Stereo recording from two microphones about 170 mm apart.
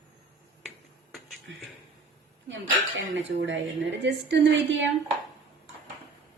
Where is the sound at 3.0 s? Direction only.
90° right.